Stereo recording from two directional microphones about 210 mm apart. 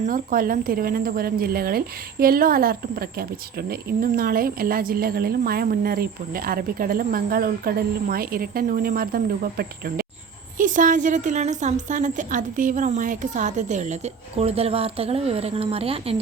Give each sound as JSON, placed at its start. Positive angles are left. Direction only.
{"t": 0.0, "sound": "a woman's voice", "side_deg": -40}